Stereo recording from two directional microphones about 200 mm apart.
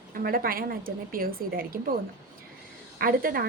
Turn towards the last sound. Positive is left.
turn(degrees=-45)  # may be behind; listen again after turning